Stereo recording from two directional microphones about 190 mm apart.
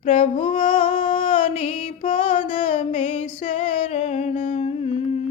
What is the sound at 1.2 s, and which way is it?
Music, 35° left (ahead or behind).